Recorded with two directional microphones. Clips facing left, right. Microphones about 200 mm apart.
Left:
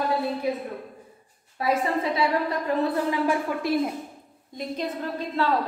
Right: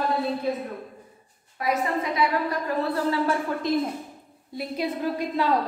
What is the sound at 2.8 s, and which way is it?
A woman's voice, 15° left (ahead or behind).